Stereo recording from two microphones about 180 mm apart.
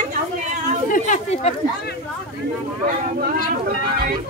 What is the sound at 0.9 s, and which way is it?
Speech, 45° left (ahead or behind).